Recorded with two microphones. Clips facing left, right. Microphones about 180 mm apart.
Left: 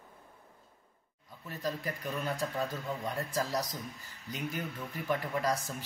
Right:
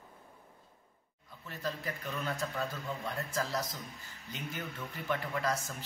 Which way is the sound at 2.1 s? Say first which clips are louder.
Left 2 dB; 15° left (ahead or behind).